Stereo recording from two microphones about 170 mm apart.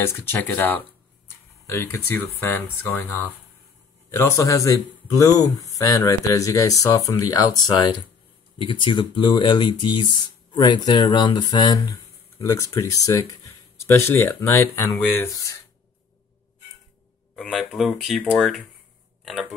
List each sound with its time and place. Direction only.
0.0 s speech: 15° left (ahead or behind)
17.4 s speech: centre (ahead or behind)